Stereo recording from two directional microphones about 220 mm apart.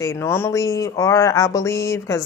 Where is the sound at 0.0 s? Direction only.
10° left (ahead or behind).